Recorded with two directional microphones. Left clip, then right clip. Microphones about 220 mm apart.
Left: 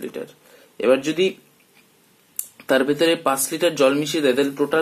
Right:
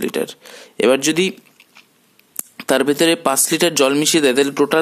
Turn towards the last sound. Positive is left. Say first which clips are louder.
# right 4 dB
turn(degrees=-50)  # may be behind; listen again after turning